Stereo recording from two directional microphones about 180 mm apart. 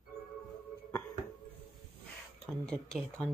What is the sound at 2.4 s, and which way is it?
Speech, 5° left (ahead or behind).